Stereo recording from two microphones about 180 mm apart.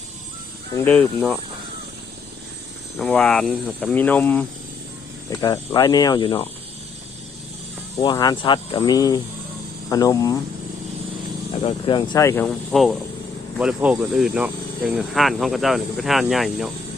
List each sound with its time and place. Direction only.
0.7 s speech: 10° left (ahead or behind)
3.0 s speech: 5° left (ahead or behind)
5.3 s speech: 20° left (ahead or behind)
7.9 s speech: 20° left (ahead or behind)
11.9 s speech: 25° left (ahead or behind)
12.7 s speech: centre (ahead or behind)